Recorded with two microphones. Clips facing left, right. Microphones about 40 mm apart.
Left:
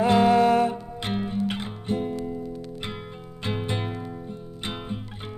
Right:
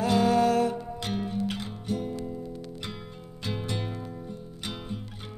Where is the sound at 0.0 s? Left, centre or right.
Left.